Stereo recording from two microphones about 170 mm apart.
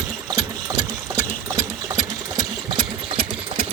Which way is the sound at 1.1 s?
20° right (ahead or behind).